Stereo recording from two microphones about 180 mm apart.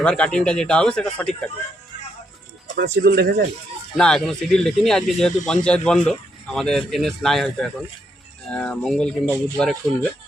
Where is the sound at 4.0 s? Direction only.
5° left (ahead or behind).